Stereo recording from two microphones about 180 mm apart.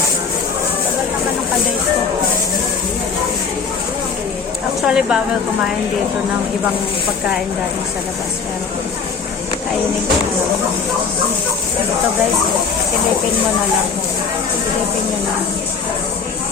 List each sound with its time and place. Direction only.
4.9 s speech: 5° right (ahead or behind)